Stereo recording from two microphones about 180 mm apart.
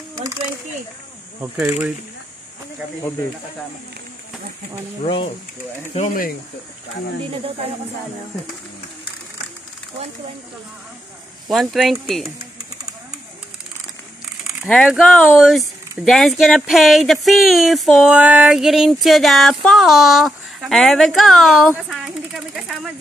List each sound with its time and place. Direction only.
1.4 s speech: 5° right (ahead or behind)
5.0 s speech: 30° left (ahead or behind)
5.9 s speech: 50° left (ahead or behind)
11.4 s speech: centre (ahead or behind)
14.4 s speech: centre (ahead or behind)